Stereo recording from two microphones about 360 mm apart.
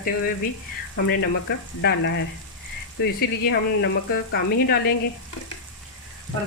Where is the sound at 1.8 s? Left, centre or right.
Left.